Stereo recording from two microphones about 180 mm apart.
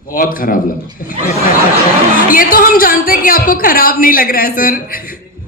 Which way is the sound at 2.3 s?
50° left (ahead or behind).